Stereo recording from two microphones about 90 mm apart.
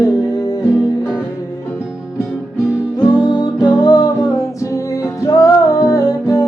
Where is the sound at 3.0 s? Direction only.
50° left (ahead or behind).